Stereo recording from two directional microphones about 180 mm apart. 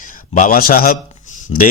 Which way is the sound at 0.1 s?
50° left (ahead or behind).